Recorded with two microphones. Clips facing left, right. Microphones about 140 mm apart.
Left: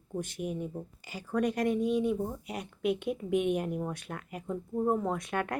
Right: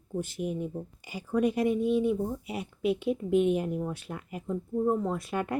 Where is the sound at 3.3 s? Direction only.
60° left (ahead or behind).